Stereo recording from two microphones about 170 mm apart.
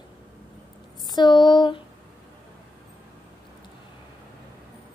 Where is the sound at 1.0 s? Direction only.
25° left (ahead or behind).